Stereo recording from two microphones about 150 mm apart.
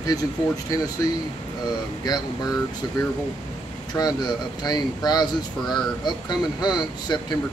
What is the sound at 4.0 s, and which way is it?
Speech, 25° left (ahead or behind).